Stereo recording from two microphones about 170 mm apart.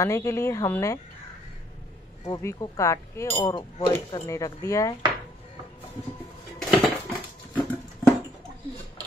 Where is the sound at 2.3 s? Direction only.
20° left (ahead or behind).